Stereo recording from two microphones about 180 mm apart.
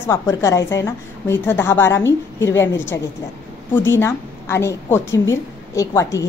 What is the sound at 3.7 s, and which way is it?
A woman's voice, 10° left (ahead or behind).